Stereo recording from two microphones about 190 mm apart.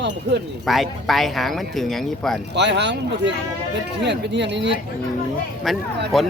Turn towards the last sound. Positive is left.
turn(degrees=0)  # may be behind; listen again after turning